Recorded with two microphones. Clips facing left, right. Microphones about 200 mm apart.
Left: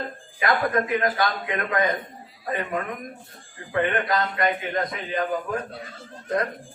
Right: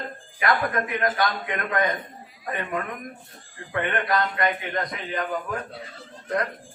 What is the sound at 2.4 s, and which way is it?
Speech, 30° left (ahead or behind).